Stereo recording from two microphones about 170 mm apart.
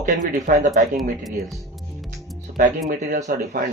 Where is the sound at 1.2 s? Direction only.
Centre (ahead or behind).